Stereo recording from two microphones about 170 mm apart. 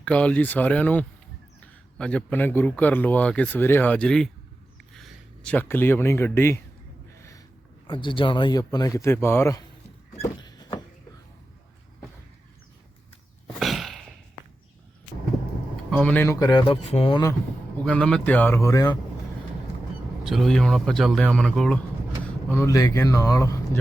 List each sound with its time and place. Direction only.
0.0 s a man's voice: 5° left (ahead or behind)
7.2 s a sound: 20° left (ahead or behind)
7.9 s speech: 30° left (ahead or behind)
10.2 s a sound: 25° left (ahead or behind)
13.6 s a sound: centre (ahead or behind)
15.9 s speech: 5° left (ahead or behind); by 17.2 s 30° left (ahead or behind)
17.8 s a man's voice: 5° left (ahead or behind)
20.2 s speech: centre (ahead or behind)
22.4 s a man's voice: 15° left (ahead or behind)